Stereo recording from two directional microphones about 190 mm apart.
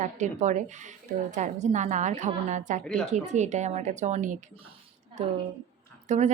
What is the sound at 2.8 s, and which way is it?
Speech, 5° left (ahead or behind).